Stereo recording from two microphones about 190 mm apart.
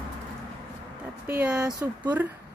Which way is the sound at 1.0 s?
10° right (ahead or behind).